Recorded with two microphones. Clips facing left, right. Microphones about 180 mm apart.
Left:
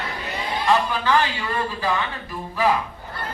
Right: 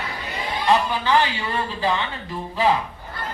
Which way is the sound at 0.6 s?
20° right (ahead or behind).